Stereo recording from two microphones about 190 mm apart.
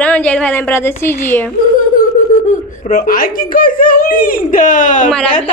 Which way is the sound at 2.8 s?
50° left (ahead or behind).